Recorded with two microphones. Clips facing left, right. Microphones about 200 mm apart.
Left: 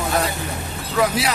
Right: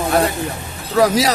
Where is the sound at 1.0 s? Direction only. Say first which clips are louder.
Right 5 dB; 40° right (ahead or behind).